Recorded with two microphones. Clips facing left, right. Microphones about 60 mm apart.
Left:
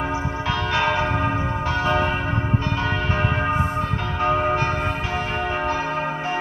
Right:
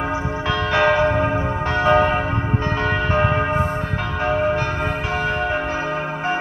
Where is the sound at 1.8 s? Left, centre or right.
Right.